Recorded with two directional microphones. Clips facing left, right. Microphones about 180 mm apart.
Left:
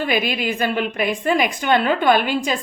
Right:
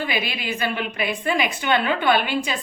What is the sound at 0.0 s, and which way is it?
A woman's voice, 45° left (ahead or behind).